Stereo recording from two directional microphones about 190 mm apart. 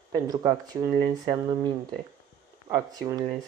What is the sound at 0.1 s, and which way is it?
Speech, 20° right (ahead or behind).